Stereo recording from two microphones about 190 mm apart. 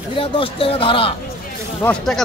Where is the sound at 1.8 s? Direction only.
Centre (ahead or behind).